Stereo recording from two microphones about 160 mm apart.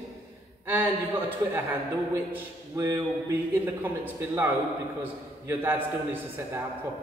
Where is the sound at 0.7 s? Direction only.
10° right (ahead or behind).